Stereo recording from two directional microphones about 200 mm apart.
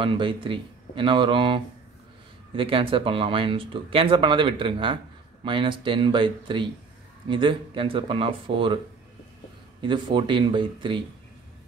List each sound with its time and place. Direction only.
0.0 s speech: 25° right (ahead or behind)
9.8 s speech: 25° right (ahead or behind)